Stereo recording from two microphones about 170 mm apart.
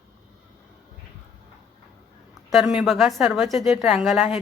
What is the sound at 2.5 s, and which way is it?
Speech, centre (ahead or behind).